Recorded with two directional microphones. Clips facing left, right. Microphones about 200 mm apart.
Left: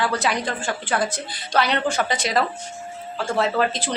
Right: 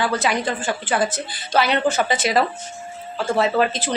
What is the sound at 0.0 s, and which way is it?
A woman's voice, centre (ahead or behind).